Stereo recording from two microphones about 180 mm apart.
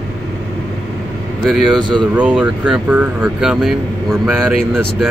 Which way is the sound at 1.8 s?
25° right (ahead or behind).